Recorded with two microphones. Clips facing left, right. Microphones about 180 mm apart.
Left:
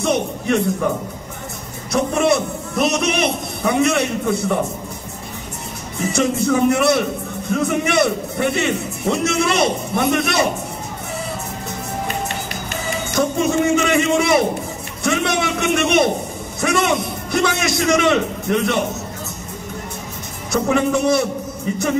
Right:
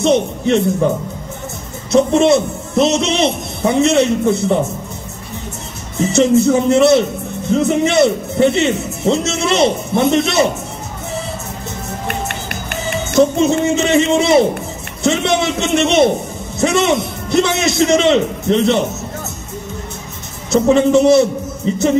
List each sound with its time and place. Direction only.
0.0 s a man's voice: 25° right (ahead or behind)
1.9 s a man's voice: 25° right (ahead or behind)
5.9 s a man's voice: 25° right (ahead or behind)
12.1 s music: 60° right (ahead or behind)
13.1 s a man's voice: 25° right (ahead or behind)
20.5 s a man's voice: 25° right (ahead or behind)